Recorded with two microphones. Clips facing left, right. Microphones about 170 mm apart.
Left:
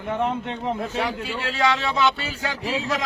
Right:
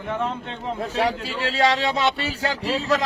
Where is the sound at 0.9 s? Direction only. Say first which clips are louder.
Right 3 dB; 35° right (ahead or behind).